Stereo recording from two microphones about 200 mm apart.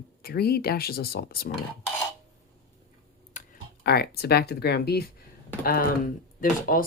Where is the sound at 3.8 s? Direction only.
50° left (ahead or behind).